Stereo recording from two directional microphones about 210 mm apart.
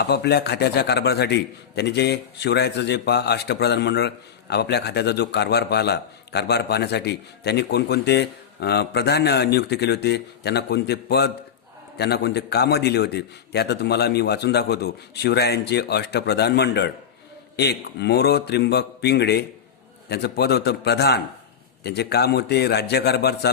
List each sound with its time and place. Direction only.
0.0 s a man's voice: 50° left (ahead or behind)